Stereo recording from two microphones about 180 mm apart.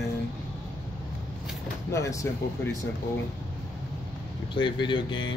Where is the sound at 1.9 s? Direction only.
15° left (ahead or behind).